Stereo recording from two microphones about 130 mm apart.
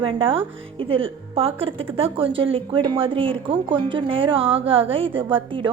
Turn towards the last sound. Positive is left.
turn(degrees=-40)  # may be behind; listen again after turning